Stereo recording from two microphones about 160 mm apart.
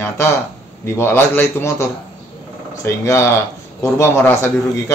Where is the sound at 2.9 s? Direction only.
15° left (ahead or behind).